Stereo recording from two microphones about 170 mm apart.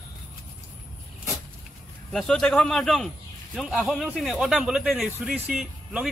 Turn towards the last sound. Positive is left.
turn(degrees=-5)  # may be behind; listen again after turning